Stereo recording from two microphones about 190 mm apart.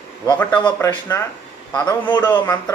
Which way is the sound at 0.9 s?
15° left (ahead or behind).